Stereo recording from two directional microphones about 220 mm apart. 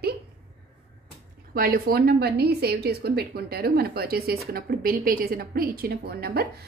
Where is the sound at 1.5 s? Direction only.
40° right (ahead or behind).